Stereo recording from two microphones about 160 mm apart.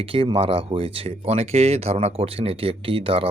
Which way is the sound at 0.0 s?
35° right (ahead or behind).